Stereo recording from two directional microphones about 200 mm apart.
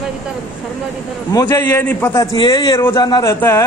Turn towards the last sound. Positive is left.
turn(degrees=15)  # may be behind; listen again after turning